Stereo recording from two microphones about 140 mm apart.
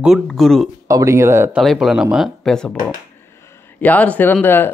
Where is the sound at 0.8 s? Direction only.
20° right (ahead or behind).